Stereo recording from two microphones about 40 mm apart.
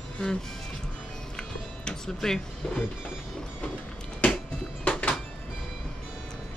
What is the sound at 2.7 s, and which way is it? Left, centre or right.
Speech, left.